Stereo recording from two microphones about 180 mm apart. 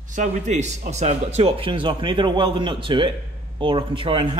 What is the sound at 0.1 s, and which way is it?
Speech, 40° right (ahead or behind).